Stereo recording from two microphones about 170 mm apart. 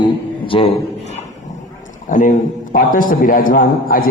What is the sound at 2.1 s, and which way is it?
A man's voice, 50° left (ahead or behind).